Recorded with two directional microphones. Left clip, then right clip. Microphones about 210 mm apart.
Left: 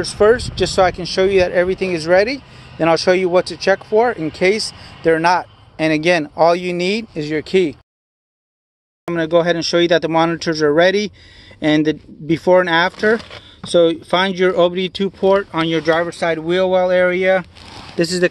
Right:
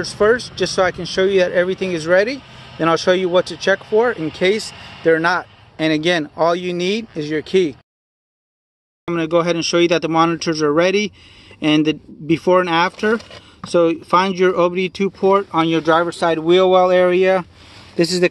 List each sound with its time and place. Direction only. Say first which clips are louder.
0.0 s speech: left 2 dB; centre (ahead or behind)
4.7 s speech: right 3 dB; 35° right (ahead or behind)
5.0 s speech: left 1 dB; centre (ahead or behind)
9.0 s speech: left 2 dB; centre (ahead or behind)
13.1 s speech: left 2 dB; 20° left (ahead or behind)
13.6 s speech: left 2 dB; centre (ahead or behind)